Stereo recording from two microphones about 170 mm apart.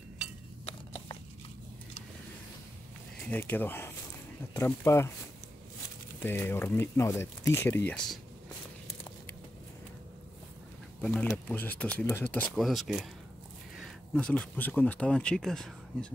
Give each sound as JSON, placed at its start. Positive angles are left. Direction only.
{"t": 0.7, "sound": "a sound", "side_deg": 30}
{"t": 3.3, "sound": "speech", "side_deg": 10}
{"t": 6.2, "sound": "speech", "side_deg": 15}
{"t": 11.0, "sound": "speech", "side_deg": 5}